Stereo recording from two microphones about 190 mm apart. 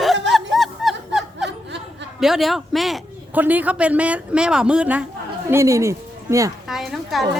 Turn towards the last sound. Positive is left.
turn(degrees=0)  # may be behind; listen again after turning